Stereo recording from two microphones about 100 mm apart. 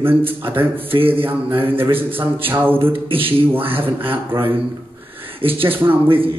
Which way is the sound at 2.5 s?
20° right (ahead or behind).